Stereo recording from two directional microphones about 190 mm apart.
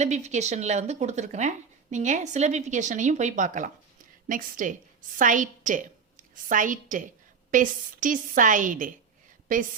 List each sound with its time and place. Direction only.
0.0 s a woman's voice: 35° right (ahead or behind)